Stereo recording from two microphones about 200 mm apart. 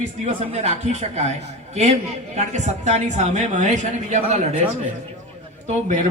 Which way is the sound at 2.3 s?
35° right (ahead or behind).